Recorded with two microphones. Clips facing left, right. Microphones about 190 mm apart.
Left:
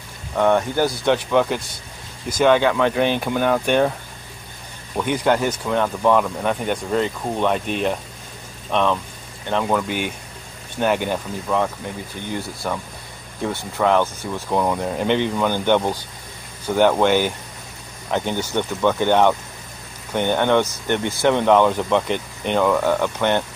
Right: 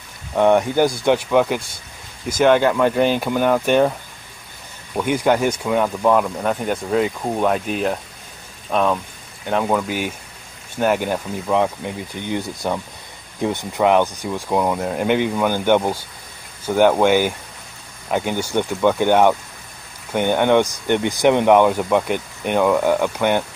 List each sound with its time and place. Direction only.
0.4 s speech: 15° right (ahead or behind)
4.9 s speech: 10° right (ahead or behind)
12.2 s speech: 20° right (ahead or behind)